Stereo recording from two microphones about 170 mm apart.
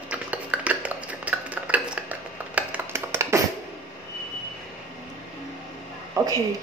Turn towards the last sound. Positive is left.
turn(degrees=-20)  # may be behind; listen again after turning